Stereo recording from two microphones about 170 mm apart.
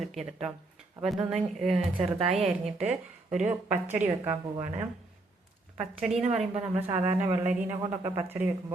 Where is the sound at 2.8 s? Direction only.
5° right (ahead or behind).